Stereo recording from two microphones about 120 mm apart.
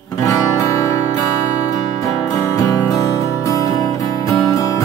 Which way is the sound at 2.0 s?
30° left (ahead or behind).